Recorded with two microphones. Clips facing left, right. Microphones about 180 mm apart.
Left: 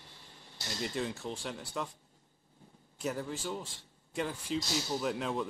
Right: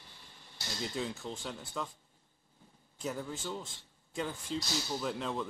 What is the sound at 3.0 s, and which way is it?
A man's voice, 5° left (ahead or behind).